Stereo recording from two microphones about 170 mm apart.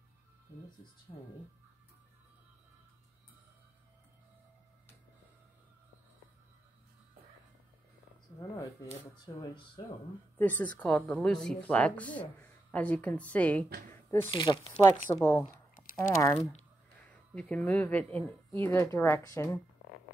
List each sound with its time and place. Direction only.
1.1 s speech: 30° left (ahead or behind)
9.2 s speech: 25° left (ahead or behind)
10.3 s speech: 10° left (ahead or behind)
14.3 s speech: 30° left (ahead or behind)
14.7 s speech: 10° left (ahead or behind)